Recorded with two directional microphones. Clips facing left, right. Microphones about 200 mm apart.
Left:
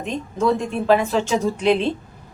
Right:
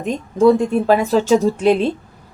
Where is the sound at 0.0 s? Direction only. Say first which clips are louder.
Right 8 dB; 40° right (ahead or behind).